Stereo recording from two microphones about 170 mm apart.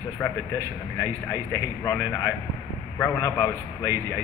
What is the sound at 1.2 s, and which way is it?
A man's voice, 20° left (ahead or behind).